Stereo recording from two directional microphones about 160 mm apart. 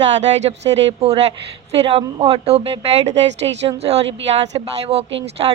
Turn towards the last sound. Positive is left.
turn(degrees=-40)  # may be behind; listen again after turning